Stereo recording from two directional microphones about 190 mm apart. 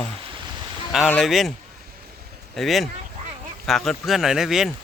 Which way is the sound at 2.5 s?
Centre (ahead or behind).